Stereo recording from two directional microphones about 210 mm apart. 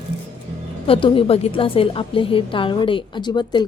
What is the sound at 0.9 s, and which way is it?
A woman's voice, 25° left (ahead or behind).